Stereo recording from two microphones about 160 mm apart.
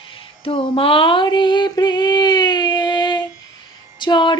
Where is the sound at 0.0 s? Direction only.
35° left (ahead or behind).